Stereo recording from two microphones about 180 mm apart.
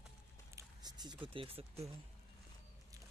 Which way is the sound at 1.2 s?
30° right (ahead or behind).